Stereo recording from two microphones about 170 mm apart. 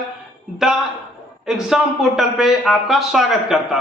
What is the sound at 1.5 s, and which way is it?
Speech, 5° right (ahead or behind).